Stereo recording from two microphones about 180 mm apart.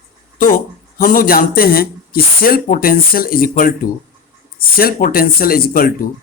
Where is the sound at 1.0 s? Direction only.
50° left (ahead or behind).